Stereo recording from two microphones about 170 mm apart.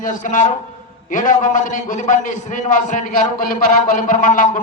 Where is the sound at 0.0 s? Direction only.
50° left (ahead or behind).